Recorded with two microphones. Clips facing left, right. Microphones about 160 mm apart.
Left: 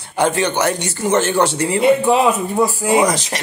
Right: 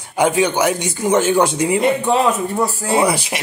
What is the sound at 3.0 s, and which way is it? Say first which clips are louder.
Speech: even; 10° right (ahead or behind).